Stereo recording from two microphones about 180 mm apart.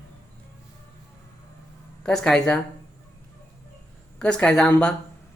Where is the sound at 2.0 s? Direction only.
5° left (ahead or behind).